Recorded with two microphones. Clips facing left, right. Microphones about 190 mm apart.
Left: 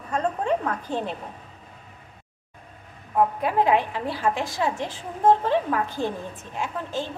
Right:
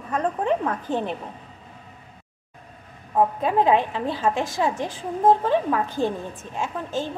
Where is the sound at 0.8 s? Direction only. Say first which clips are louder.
Right 3 dB; 20° right (ahead or behind).